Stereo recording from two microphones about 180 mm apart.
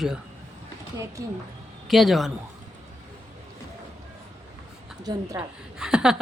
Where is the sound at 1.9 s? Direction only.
Centre (ahead or behind).